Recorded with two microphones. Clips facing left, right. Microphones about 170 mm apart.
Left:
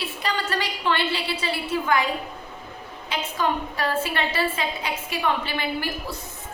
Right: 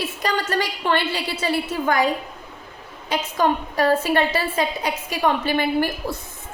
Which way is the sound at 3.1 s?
45° right (ahead or behind).